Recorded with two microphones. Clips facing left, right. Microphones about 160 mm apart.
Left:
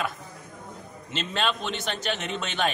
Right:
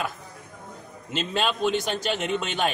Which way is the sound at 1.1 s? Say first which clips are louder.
Right 2 dB; 10° right (ahead or behind).